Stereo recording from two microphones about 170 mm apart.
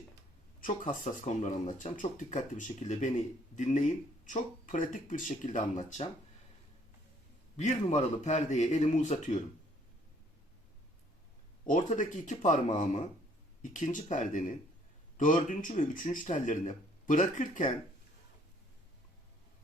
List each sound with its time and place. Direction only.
0.6 s speech: 45° left (ahead or behind)
7.5 s speech: 40° left (ahead or behind)
11.6 s speech: 50° left (ahead or behind)